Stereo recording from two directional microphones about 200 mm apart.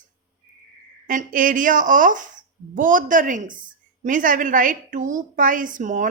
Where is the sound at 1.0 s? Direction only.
40° right (ahead or behind).